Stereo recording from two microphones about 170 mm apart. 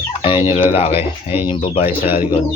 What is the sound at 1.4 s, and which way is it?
Speech, 30° left (ahead or behind).